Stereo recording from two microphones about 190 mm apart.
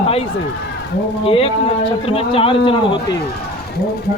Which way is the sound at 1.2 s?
30° left (ahead or behind).